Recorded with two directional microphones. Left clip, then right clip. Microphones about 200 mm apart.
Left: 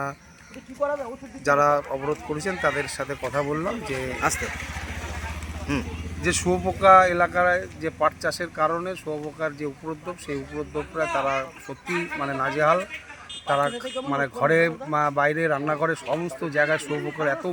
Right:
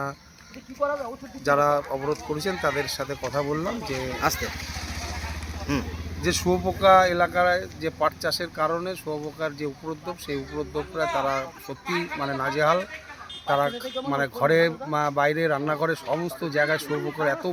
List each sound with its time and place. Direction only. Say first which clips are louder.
0.8 s speech: even; 30° left (ahead or behind)
1.5 s speech: left 1 dB; centre (ahead or behind)
6.2 s speech: even; centre (ahead or behind)
12.2 s speech: left 1 dB; 5° right (ahead or behind)